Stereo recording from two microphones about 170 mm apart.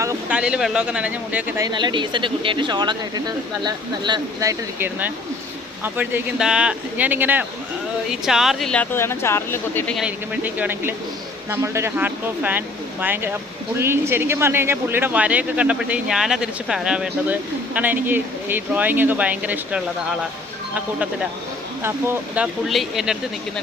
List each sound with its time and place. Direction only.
0.3 s speech: 5° right (ahead or behind)
1.6 s speech: 25° right (ahead or behind); by 9.9 s 15° left (ahead or behind)
9.9 s speech: 5° right (ahead or behind)
21.8 s speech: 15° right (ahead or behind)
22.6 s speech: centre (ahead or behind)